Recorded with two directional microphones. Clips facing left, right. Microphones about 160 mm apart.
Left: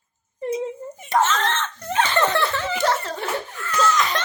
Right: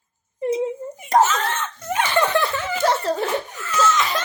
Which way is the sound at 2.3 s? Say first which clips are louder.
Right 2 dB; 20° right (ahead or behind).